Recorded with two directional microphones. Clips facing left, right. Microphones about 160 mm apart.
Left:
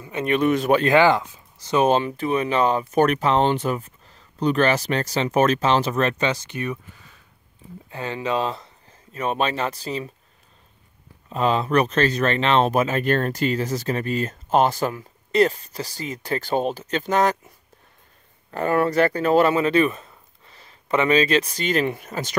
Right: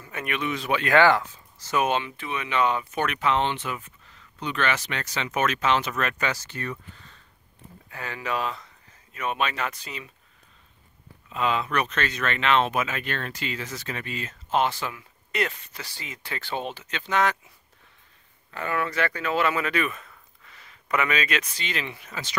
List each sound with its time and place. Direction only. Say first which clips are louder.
0.0 s a sound: left 8 dB; 20° left (ahead or behind)
0.3 s speech: left 9 dB; 45° left (ahead or behind)
0.8 s speech: right 2 dB; 20° left (ahead or behind)
1.8 s speech: left 6 dB; 35° left (ahead or behind); by 7.2 s 10° left (ahead or behind)
7.9 s speech: left 6 dB; 25° left (ahead or behind)
11.2 s speech: left 5 dB; 35° left (ahead or behind)
18.5 s speech: left 8 dB; 40° left (ahead or behind)